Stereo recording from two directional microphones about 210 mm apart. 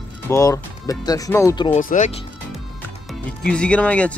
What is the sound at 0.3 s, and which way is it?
Speech, 15° left (ahead or behind).